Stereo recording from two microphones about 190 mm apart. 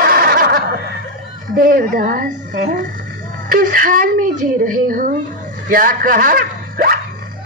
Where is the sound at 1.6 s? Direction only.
50° right (ahead or behind).